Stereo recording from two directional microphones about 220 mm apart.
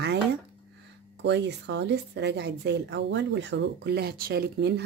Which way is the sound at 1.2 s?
50° right (ahead or behind).